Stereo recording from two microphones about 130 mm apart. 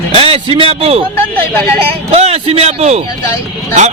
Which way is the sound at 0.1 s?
45° right (ahead or behind).